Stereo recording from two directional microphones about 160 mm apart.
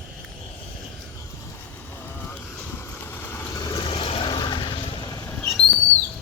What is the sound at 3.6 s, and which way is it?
Vehicle, 30° left (ahead or behind).